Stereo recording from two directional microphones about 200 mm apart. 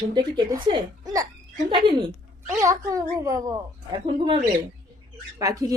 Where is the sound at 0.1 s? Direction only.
20° right (ahead or behind).